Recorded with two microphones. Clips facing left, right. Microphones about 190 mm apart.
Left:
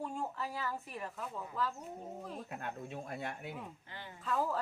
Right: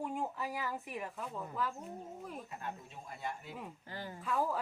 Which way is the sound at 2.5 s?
60° left (ahead or behind).